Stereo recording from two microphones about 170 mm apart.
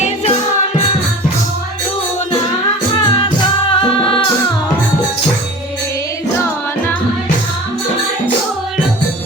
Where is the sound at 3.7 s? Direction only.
30° left (ahead or behind).